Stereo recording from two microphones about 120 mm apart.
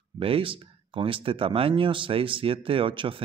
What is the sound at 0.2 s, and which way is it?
Speech, 50° right (ahead or behind).